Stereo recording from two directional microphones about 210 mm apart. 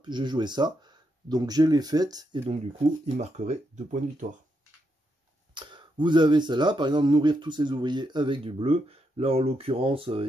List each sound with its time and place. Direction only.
0.0 s speech: 20° right (ahead or behind)
3.2 s speech: 35° right (ahead or behind)
5.5 s speech: 20° right (ahead or behind)